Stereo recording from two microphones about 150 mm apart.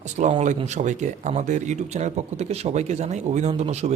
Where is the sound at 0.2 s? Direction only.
50° right (ahead or behind).